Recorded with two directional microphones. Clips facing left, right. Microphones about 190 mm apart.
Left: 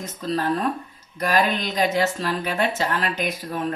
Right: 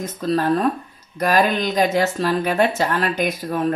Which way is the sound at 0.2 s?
50° right (ahead or behind).